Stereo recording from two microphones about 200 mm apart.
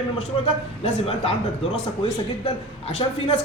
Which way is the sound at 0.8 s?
30° left (ahead or behind).